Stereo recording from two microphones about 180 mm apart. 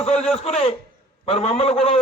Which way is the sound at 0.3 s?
35° left (ahead or behind).